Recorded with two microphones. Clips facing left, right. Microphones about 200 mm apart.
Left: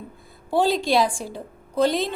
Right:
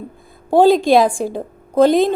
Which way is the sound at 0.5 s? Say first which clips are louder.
Right 9 dB; 50° right (ahead or behind).